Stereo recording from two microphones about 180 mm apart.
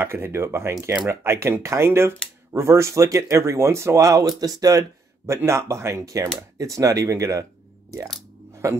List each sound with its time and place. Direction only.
0.0 s speech: 15° right (ahead or behind)